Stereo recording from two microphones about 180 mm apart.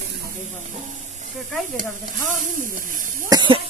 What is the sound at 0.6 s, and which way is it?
Speech, 45° right (ahead or behind).